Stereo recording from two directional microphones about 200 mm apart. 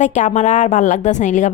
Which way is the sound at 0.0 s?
35° left (ahead or behind).